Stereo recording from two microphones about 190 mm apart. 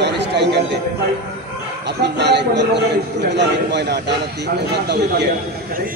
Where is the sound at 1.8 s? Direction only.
60° right (ahead or behind).